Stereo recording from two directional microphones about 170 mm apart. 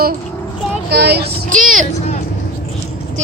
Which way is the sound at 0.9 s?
75° right (ahead or behind).